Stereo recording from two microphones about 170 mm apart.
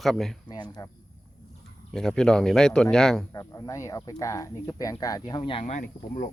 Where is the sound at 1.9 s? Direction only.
5° left (ahead or behind).